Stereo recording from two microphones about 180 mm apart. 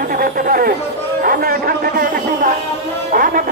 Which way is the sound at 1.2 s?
55° right (ahead or behind).